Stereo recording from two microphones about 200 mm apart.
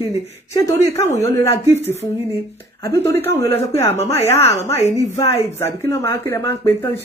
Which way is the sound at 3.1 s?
10° left (ahead or behind).